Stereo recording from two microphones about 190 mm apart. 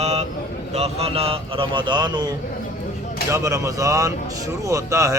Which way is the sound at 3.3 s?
15° right (ahead or behind).